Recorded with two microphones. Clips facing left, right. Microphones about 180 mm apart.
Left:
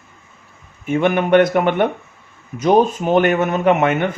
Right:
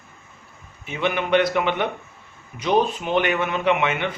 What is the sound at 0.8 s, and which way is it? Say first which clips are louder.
Speech: left 8 dB; 50° left (ahead or behind).